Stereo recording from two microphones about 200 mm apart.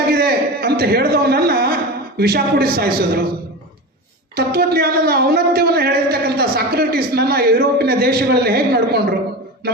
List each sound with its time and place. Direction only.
0.1 s a sound: 50° right (ahead or behind)
2.1 s speech: 50° right (ahead or behind)
4.4 s speech: 50° right (ahead or behind)